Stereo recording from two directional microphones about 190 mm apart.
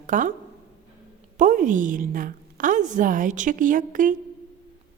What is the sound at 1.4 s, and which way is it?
A woman's voice, 40° right (ahead or behind).